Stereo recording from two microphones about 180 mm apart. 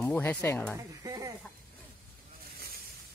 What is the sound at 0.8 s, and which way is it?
Speech, 20° right (ahead or behind).